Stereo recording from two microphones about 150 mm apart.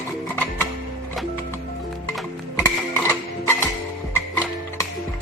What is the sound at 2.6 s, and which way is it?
Music, 15° left (ahead or behind).